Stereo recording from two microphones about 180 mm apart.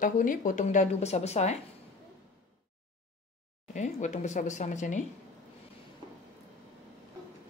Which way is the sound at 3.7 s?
40° left (ahead or behind).